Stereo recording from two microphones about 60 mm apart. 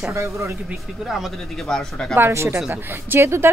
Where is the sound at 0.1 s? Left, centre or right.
Right.